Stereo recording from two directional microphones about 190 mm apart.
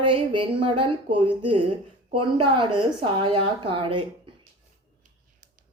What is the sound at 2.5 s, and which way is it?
A woman's voice, 25° right (ahead or behind).